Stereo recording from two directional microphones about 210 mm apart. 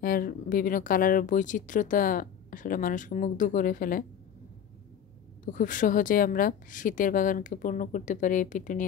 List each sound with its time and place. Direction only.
0.0 s speech: 45° left (ahead or behind)
5.4 s speech: 40° left (ahead or behind)